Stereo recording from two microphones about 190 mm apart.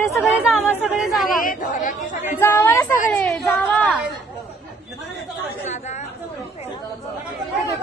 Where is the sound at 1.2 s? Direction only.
45° left (ahead or behind).